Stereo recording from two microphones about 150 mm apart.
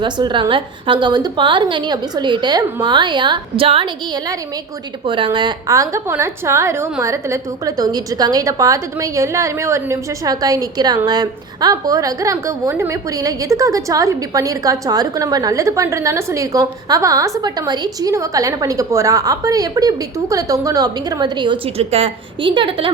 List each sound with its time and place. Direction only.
0.0 s a woman's voice: 30° right (ahead or behind)